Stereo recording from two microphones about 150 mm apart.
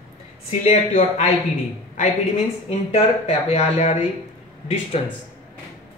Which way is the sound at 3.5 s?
45° left (ahead or behind).